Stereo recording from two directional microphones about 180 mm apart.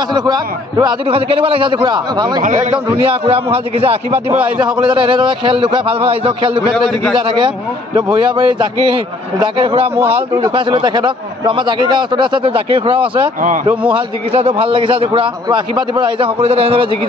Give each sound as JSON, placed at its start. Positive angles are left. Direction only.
{"t": 0.1, "sound": "speech", "side_deg": -25}
{"t": 2.4, "sound": "a man's voice", "side_deg": -45}
{"t": 3.0, "sound": "a man's voice", "side_deg": -30}
{"t": 9.9, "sound": "a man's voice", "side_deg": -10}
{"t": 10.3, "sound": "speech", "side_deg": -30}
{"t": 14.3, "sound": "a man's voice", "side_deg": -35}